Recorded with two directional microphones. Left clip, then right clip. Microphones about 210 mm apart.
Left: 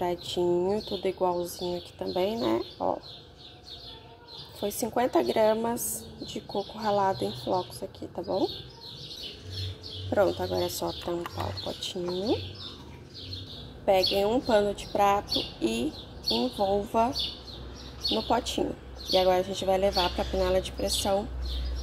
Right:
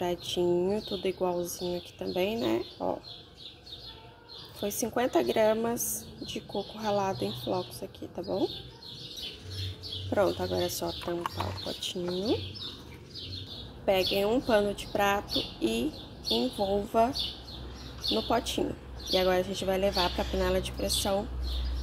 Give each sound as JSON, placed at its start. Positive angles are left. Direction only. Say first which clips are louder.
{"t": 0.4, "sound": "speech", "louder": "left 2 dB", "side_deg": 0}
{"t": 4.6, "sound": "speech", "louder": "left 2 dB", "side_deg": 0}
{"t": 5.8, "sound": "a woman's voice", "louder": "even", "side_deg": 35}
{"t": 6.3, "sound": "speech", "louder": "left 3 dB", "side_deg": 5}
{"t": 10.0, "sound": "speech", "louder": "left 2 dB", "side_deg": 0}
{"t": 13.8, "sound": "speech", "louder": "left 3 dB", "side_deg": 5}
{"t": 18.1, "sound": "speech", "louder": "left 1 dB", "side_deg": 5}